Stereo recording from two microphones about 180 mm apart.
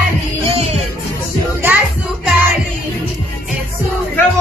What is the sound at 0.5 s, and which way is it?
Music, 35° right (ahead or behind).